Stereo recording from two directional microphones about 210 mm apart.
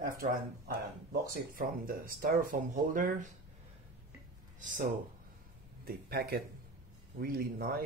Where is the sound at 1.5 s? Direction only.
40° right (ahead or behind).